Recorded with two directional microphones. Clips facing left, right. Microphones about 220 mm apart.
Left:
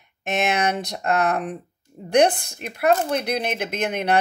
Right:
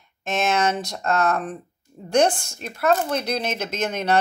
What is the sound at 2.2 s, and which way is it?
Speech, 60° left (ahead or behind).